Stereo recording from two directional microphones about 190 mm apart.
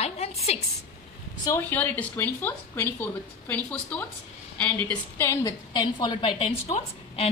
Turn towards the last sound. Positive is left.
turn(degrees=30)  # may be behind; listen again after turning